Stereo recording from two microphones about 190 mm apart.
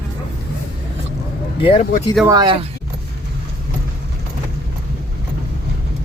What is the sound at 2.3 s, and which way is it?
Speech, 25° right (ahead or behind).